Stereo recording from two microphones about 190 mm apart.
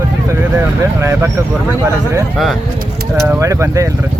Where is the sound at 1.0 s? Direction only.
15° right (ahead or behind).